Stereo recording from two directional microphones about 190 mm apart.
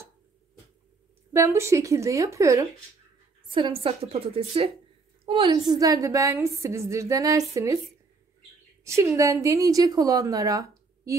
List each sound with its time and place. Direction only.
1.3 s a woman's voice: 15° right (ahead or behind)
3.5 s a woman's voice: 25° right (ahead or behind)
8.8 s a woman's voice: 15° right (ahead or behind)